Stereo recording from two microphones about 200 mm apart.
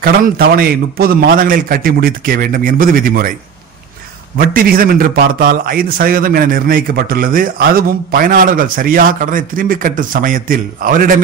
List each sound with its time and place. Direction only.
0.0 s a man's voice: 45° right (ahead or behind)
4.4 s a man's voice: 45° right (ahead or behind)